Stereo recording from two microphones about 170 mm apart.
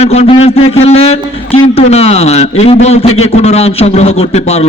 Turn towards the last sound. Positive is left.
turn(degrees=40)  # may be behind; listen again after turning